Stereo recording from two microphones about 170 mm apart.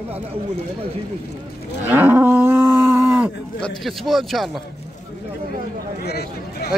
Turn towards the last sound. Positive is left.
turn(degrees=70)  # may be behind; listen again after turning